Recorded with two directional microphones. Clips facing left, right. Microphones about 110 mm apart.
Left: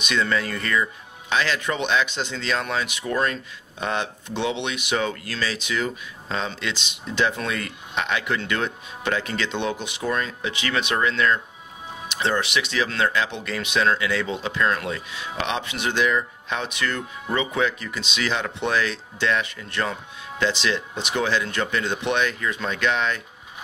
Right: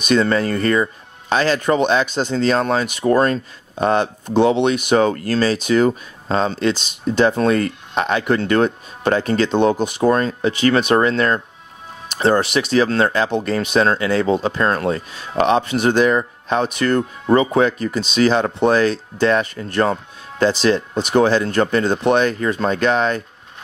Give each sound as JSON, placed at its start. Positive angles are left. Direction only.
{"t": 0.0, "sound": "speech", "side_deg": -40}